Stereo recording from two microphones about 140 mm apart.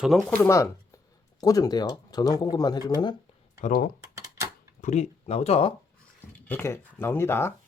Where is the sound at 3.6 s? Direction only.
85° left.